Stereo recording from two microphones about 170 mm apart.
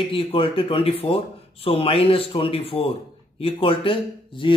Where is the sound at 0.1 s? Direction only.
35° left (ahead or behind).